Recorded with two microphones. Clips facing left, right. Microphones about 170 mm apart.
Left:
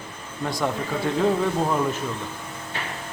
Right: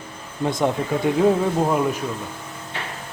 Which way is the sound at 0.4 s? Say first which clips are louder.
Right 5 dB; 20° right (ahead or behind).